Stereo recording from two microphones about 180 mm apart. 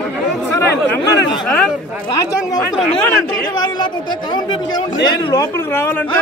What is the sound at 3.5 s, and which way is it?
A man's voice, 25° left (ahead or behind).